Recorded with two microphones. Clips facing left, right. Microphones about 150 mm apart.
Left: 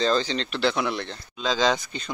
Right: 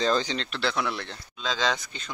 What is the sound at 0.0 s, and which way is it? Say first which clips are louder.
Speech: left 2 dB; 10° right (ahead or behind).